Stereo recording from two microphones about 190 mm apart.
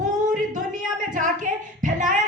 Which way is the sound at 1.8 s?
45° right (ahead or behind).